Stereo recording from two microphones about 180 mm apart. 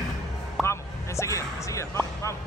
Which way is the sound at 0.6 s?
15° left (ahead or behind).